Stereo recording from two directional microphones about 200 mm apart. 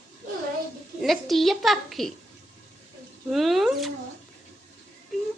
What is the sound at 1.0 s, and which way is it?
A woman's voice, centre (ahead or behind).